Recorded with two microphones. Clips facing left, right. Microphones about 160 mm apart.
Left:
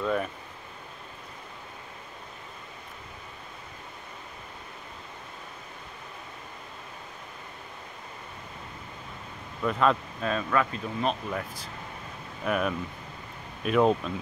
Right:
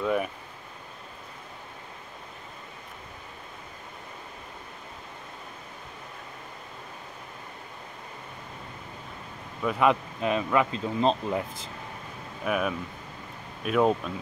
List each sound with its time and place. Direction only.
0.0 s speech: 10° right (ahead or behind)
9.6 s speech: 10° right (ahead or behind)
12.4 s speech: 5° right (ahead or behind)